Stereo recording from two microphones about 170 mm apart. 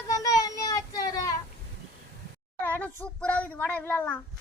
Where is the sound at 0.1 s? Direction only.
20° left (ahead or behind).